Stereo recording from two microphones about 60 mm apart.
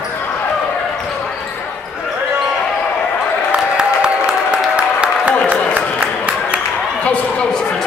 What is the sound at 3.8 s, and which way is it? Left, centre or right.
Applause, centre.